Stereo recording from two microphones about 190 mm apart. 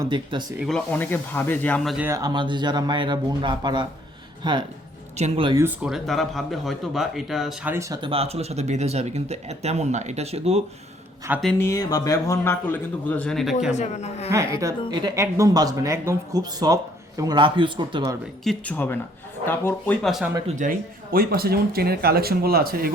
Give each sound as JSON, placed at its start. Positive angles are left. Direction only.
{"t": 0.0, "sound": "speech", "side_deg": -25}
{"t": 0.6, "sound": "speech", "side_deg": 5}
{"t": 2.0, "sound": "speech", "side_deg": -20}
{"t": 5.1, "sound": "speech", "side_deg": -30}
{"t": 5.5, "sound": "speech", "side_deg": -10}
{"t": 8.1, "sound": "speech", "side_deg": -30}
{"t": 11.3, "sound": "speech", "side_deg": -10}
{"t": 11.6, "sound": "speech", "side_deg": 15}
{"t": 13.7, "sound": "a man's voice", "side_deg": 35}
{"t": 14.3, "sound": "speech", "side_deg": -15}
{"t": 18.4, "sound": "speech", "side_deg": 5}
{"t": 20.5, "sound": "speech", "side_deg": -45}